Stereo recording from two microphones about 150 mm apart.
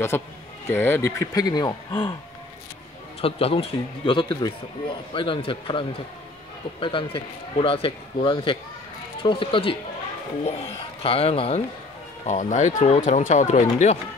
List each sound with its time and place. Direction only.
0.7 s speech: 15° left (ahead or behind); by 2.1 s 30° left (ahead or behind)
3.2 s a man's voice: 40° left (ahead or behind)
10.4 s a man's voice: 45° left (ahead or behind)
12.3 s speech: 50° left (ahead or behind)